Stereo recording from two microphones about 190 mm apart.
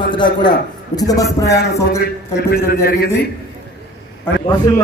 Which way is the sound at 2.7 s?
55° left (ahead or behind).